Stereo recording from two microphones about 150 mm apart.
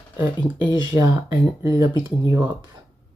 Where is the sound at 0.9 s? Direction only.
20° right (ahead or behind).